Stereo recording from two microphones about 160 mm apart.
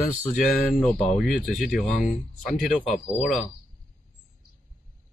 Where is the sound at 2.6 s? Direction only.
45° left (ahead or behind).